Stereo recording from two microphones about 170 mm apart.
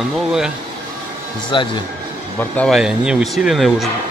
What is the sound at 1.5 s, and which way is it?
Speech, 30° left (ahead or behind).